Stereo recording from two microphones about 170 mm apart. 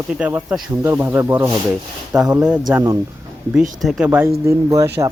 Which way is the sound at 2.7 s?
15° right (ahead or behind).